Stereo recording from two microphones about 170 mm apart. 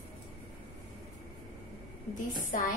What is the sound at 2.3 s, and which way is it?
Speech, 50° left (ahead or behind).